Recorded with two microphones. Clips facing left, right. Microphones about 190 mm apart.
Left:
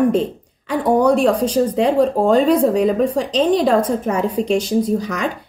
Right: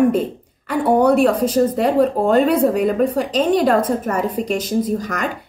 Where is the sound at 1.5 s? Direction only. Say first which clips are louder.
Even; 5° right (ahead or behind).